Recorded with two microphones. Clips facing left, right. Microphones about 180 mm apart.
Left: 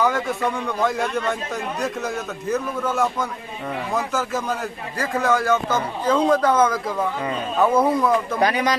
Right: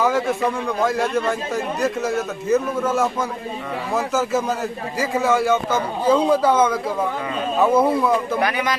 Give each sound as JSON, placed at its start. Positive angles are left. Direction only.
{"t": 0.0, "sound": "a man's voice", "side_deg": 0}
{"t": 8.4, "sound": "speech", "side_deg": 35}